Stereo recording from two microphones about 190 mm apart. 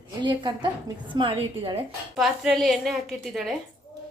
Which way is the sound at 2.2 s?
Centre (ahead or behind).